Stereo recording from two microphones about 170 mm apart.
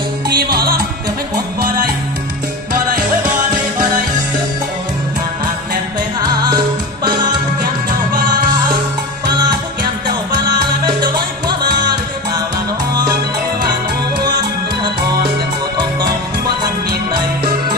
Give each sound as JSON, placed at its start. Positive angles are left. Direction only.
{"t": 0.3, "sound": "music", "side_deg": -65}